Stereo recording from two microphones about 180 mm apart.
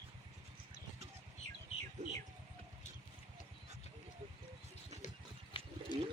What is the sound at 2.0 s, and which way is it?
Speech, 40° right (ahead or behind).